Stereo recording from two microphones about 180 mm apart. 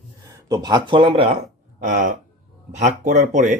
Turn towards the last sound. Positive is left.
turn(degrees=-45)  # may be behind; listen again after turning